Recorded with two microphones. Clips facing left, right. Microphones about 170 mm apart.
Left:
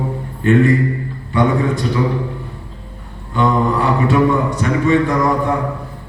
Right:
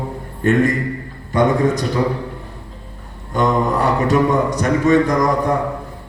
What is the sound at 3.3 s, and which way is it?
A man's voice, 40° right (ahead or behind).